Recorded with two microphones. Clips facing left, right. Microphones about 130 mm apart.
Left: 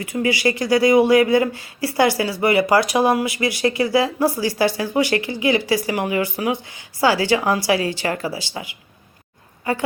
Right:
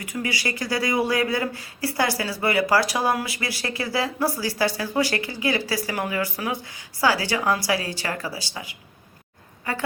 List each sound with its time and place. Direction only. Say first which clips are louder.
0.4 s a woman's voice: left 11 dB; 20° left (ahead or behind)